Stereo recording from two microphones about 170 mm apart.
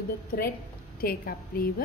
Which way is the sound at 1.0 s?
60° left (ahead or behind).